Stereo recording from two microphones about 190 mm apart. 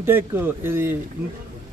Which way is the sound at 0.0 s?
10° right (ahead or behind).